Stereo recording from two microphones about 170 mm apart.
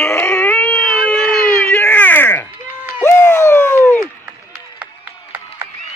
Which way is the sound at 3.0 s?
15° left (ahead or behind).